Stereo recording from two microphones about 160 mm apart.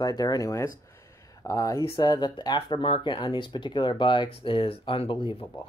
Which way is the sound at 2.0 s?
25° left (ahead or behind).